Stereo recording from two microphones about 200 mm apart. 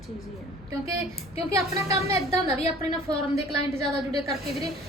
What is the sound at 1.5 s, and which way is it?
Speech, 15° right (ahead or behind).